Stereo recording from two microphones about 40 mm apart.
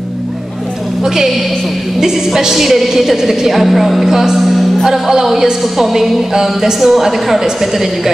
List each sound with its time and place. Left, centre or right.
1.0 s a woman's voice: centre